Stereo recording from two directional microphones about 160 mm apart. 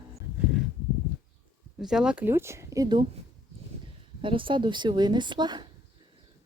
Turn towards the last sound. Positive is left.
turn(degrees=-25)  # may be behind; listen again after turning